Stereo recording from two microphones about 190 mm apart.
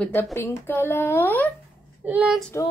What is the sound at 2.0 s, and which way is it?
Child singing, 5° right (ahead or behind).